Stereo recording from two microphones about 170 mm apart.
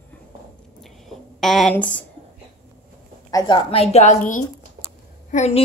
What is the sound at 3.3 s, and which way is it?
A woman's voice, 30° left (ahead or behind).